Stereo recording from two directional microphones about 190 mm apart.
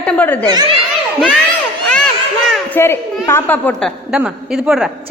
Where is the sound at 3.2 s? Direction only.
10° left (ahead or behind).